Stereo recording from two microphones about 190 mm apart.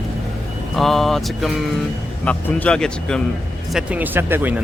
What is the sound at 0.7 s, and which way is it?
Speech, centre (ahead or behind).